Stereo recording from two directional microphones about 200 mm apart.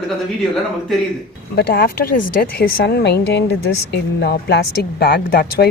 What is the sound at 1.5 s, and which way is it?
Speech, 50° left (ahead or behind).